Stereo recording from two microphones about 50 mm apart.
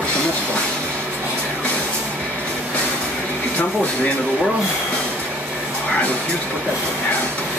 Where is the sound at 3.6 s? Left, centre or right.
Left.